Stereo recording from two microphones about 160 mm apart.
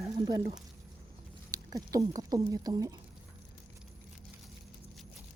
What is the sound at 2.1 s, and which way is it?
Speech, 25° right (ahead or behind).